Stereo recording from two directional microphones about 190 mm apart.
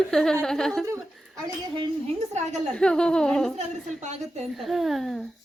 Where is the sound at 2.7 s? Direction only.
5° left (ahead or behind).